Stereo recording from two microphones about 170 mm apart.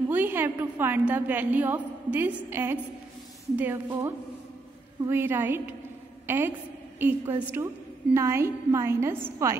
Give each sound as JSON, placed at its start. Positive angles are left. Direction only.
{"t": 0.1, "sound": "a woman's voice", "side_deg": -10}